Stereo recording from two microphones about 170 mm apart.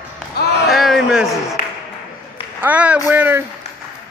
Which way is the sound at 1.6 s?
60° left (ahead or behind).